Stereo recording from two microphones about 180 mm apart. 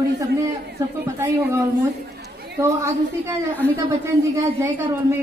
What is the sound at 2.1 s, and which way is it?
Chatter, 60° right (ahead or behind).